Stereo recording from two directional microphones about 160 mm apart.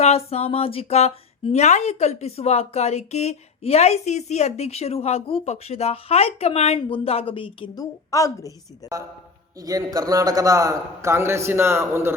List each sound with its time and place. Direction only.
0.0 s speech: 40° left (ahead or behind)
8.1 s a woman's voice: 20° left (ahead or behind)
9.6 s a man's voice: 20° right (ahead or behind)